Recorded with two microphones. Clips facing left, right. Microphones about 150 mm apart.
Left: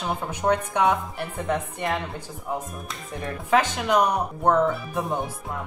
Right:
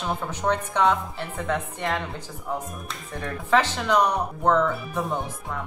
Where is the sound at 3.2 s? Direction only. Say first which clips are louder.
Even; 10° left (ahead or behind).